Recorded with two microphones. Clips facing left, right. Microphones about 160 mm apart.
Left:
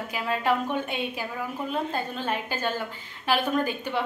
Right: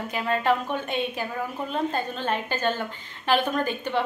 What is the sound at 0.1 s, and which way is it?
A woman's voice, 5° left (ahead or behind).